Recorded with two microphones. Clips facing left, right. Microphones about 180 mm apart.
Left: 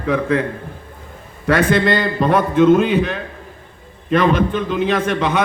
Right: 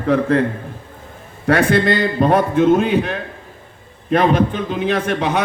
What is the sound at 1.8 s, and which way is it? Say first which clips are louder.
A man's voice: right 1 dB; 60° left (ahead or behind).